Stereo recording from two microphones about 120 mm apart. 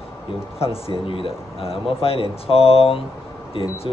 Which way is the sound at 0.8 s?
50° left (ahead or behind).